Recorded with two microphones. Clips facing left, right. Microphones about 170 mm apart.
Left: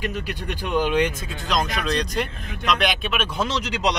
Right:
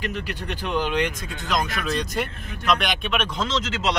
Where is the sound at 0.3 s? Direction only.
10° left (ahead or behind).